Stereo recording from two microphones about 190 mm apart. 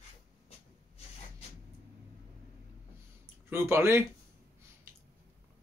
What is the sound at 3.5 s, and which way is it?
Speech, 15° right (ahead or behind).